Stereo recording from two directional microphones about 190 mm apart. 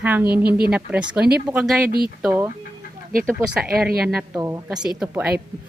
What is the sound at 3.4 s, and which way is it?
Speech, 5° right (ahead or behind).